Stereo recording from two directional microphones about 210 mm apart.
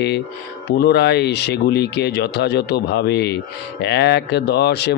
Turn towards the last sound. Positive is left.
turn(degrees=50)  # may be behind; listen again after turning